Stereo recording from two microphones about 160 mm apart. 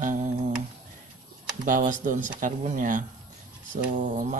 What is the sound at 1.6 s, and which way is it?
Speech, 55° right (ahead or behind).